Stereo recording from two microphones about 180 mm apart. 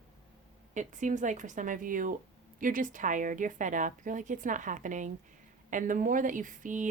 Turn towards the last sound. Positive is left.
turn(degrees=-45)  # may be behind; listen again after turning